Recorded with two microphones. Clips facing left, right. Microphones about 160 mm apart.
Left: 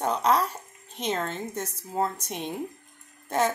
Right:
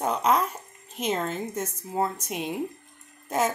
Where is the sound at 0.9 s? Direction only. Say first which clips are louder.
Right 2 dB; 5° right (ahead or behind).